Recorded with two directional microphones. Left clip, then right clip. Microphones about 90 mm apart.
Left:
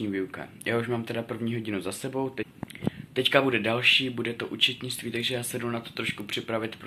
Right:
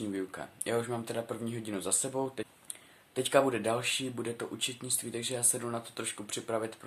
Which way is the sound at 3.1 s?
20° right (ahead or behind).